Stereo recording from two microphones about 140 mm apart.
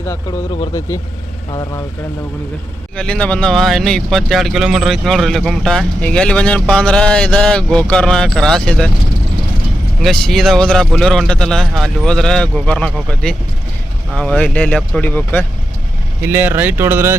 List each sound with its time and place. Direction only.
0.0 s speech: 20° left (ahead or behind)
2.9 s speech: 5° left (ahead or behind)
10.0 s speech: centre (ahead or behind)
16.2 s speech: 15° right (ahead or behind)